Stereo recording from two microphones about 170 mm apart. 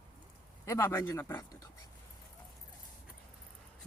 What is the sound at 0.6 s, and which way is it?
Speech, 15° left (ahead or behind).